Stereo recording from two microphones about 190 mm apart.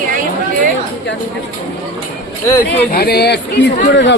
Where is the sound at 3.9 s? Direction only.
70° left (ahead or behind).